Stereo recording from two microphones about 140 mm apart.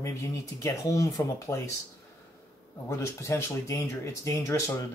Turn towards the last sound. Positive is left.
turn(degrees=20)  # may be behind; listen again after turning